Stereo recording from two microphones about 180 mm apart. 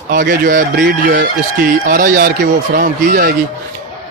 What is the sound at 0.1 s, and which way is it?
Speech, 50° right (ahead or behind).